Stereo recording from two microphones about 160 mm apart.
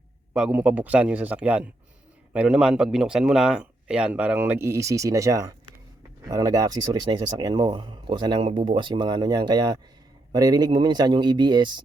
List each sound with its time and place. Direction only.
0.3 s speech: 5° right (ahead or behind); by 11.8 s 30° right (ahead or behind)